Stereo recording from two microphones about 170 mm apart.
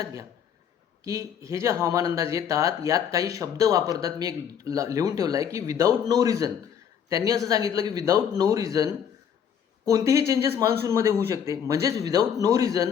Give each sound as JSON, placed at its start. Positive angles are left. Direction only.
{"t": 0.0, "sound": "a man's voice", "side_deg": -20}